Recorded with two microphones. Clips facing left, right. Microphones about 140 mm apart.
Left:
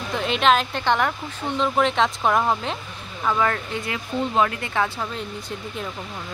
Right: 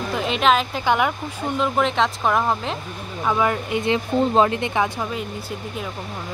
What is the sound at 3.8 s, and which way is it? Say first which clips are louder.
Speech: right 8 dB; 25° right (ahead or behind).